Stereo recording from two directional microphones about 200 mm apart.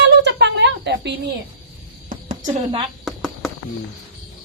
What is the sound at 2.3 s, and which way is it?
Speech, 35° right (ahead or behind).